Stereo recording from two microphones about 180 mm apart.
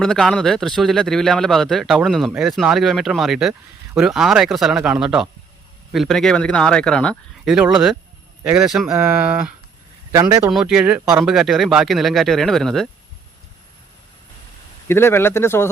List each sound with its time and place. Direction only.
0.0 s a man's voice: 5° left (ahead or behind); by 10.5 s 15° right (ahead or behind)
10.5 s a man's voice: 5° right (ahead or behind)
14.8 s speech: 15° left (ahead or behind)